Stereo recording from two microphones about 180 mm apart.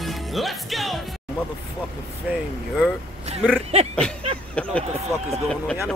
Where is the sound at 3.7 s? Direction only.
40° right (ahead or behind).